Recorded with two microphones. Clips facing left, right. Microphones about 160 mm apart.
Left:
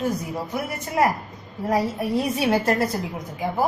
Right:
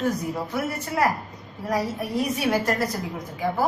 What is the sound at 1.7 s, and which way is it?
A woman's voice, 25° left (ahead or behind).